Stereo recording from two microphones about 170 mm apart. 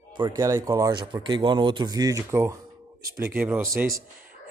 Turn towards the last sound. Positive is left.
turn(degrees=-15)  # may be behind; listen again after turning